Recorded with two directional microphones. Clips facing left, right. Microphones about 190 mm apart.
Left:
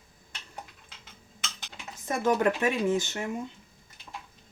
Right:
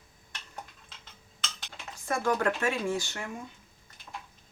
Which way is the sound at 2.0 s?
20° left (ahead or behind).